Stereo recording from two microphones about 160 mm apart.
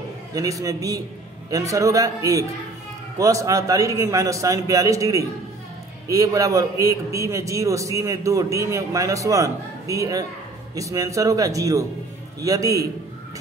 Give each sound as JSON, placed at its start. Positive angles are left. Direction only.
{"t": 0.3, "sound": "a man's voice", "side_deg": -20}